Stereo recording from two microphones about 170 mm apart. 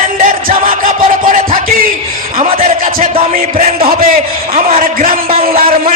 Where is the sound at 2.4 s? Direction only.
35° right (ahead or behind).